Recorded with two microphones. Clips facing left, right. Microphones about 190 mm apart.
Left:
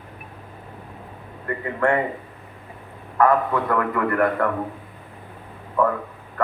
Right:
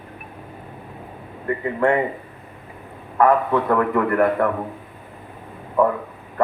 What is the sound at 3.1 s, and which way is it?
Speech, 25° right (ahead or behind).